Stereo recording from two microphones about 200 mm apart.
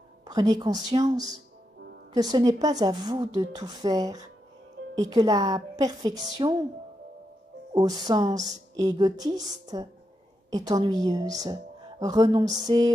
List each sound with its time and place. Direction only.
0.2 s a woman's voice: 20° right (ahead or behind)
8.0 s a woman's voice: 20° right (ahead or behind)